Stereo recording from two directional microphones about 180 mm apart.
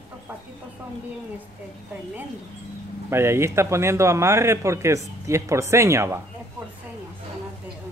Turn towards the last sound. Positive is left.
turn(degrees=-15)  # may be behind; listen again after turning